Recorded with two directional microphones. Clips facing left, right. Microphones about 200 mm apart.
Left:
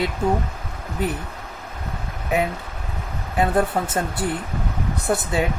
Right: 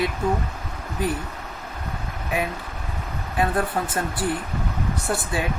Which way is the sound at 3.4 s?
25° left (ahead or behind).